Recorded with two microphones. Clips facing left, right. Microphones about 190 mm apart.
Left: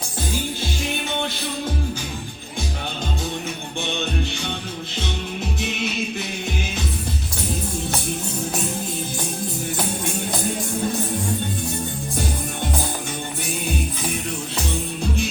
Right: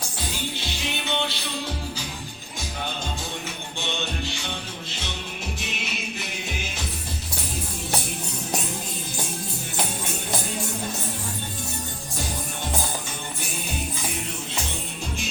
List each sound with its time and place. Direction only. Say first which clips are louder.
5.5 s music: left 8 dB; 60° left (ahead or behind)